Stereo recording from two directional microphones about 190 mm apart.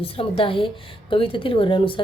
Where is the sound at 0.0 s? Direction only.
30° left (ahead or behind).